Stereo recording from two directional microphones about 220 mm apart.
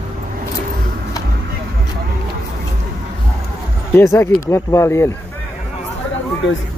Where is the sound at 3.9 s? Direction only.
10° left (ahead or behind).